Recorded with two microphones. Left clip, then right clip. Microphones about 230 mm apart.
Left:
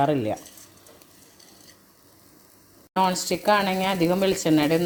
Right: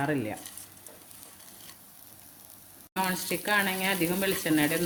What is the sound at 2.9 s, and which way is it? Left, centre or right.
Speech, left.